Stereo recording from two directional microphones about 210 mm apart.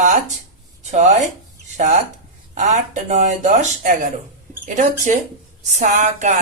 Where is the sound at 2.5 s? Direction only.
35° right (ahead or behind).